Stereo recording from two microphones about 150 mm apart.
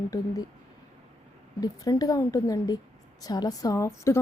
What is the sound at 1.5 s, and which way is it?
Speech, 25° left (ahead or behind).